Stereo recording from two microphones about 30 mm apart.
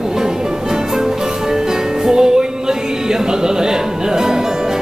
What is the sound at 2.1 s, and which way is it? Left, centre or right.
Music, right.